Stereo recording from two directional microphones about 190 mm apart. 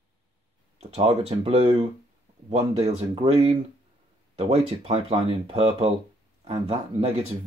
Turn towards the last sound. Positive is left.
turn(degrees=-30)  # may be behind; listen again after turning